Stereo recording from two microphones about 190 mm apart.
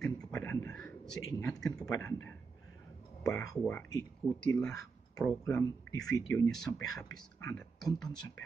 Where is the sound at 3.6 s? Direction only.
10° left (ahead or behind).